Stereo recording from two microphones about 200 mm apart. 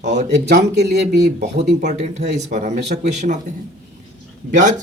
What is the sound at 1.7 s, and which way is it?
Speech, 35° right (ahead or behind).